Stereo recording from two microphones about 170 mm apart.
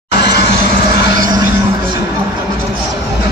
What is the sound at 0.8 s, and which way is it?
Vehicle, 25° right (ahead or behind).